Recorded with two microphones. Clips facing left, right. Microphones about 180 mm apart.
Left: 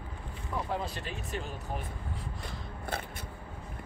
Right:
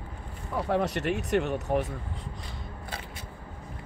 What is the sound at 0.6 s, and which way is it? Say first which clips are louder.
Speech: right 13 dB; 70° right (ahead or behind).